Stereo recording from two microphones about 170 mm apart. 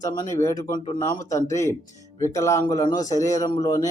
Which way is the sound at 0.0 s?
20° left (ahead or behind).